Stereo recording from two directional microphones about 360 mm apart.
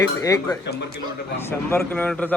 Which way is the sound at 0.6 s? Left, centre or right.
Left.